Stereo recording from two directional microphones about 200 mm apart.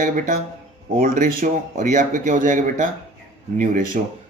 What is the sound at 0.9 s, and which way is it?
Speech, 45° right (ahead or behind).